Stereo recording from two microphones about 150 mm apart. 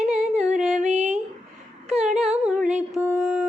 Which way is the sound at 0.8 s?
50° right (ahead or behind).